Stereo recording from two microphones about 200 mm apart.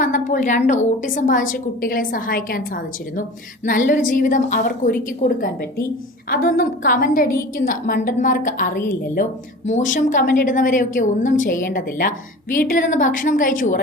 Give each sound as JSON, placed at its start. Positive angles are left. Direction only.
{"t": 0.0, "sound": "a woman's voice", "side_deg": 40}